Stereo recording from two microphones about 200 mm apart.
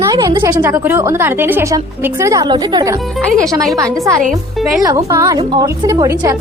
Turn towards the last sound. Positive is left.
turn(degrees=-20)  # may be behind; listen again after turning